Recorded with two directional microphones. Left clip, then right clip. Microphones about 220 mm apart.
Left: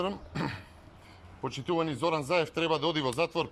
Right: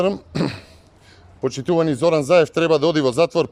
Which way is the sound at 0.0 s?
55° right (ahead or behind).